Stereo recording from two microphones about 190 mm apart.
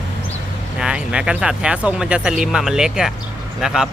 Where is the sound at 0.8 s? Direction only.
5° right (ahead or behind).